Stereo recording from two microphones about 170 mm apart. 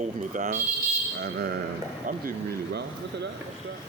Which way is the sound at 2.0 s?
55° right (ahead or behind).